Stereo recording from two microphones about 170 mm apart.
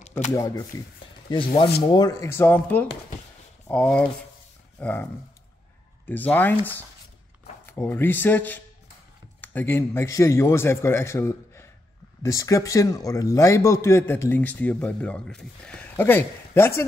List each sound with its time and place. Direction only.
0.3 s speech: 20° left (ahead or behind)
1.8 s a man's voice: 25° left (ahead or behind)
6.0 s a man's voice: 10° left (ahead or behind)